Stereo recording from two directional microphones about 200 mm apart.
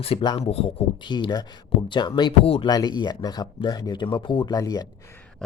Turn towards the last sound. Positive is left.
turn(degrees=20)  # may be behind; listen again after turning